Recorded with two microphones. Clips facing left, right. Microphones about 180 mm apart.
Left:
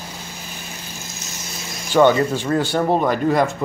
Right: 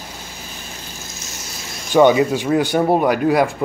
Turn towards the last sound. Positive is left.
turn(degrees=-10)  # may be behind; listen again after turning